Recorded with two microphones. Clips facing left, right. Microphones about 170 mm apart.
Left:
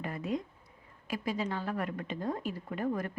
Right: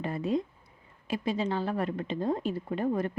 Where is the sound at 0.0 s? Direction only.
30° right (ahead or behind).